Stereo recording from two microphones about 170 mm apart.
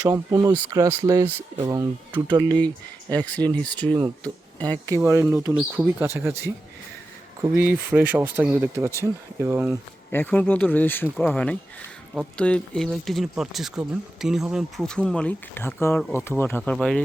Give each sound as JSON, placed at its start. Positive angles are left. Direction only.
{"t": 0.0, "sound": "speech", "side_deg": -20}
{"t": 3.1, "sound": "speech", "side_deg": 10}
{"t": 3.8, "sound": "speech", "side_deg": -25}
{"t": 10.1, "sound": "speech", "side_deg": 10}